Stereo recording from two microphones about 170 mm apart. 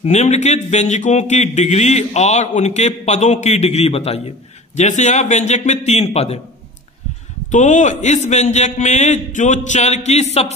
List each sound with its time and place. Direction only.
0.0 s a man's voice: 40° left (ahead or behind)
7.5 s a man's voice: 45° left (ahead or behind)